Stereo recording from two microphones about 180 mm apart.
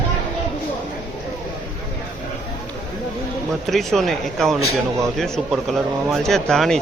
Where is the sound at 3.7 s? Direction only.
Centre (ahead or behind).